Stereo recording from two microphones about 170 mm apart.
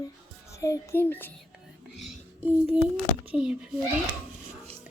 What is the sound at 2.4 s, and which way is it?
A child's voice, 10° right (ahead or behind).